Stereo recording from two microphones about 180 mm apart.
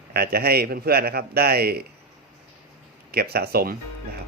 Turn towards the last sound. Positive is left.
turn(degrees=-55)  # may be behind; listen again after turning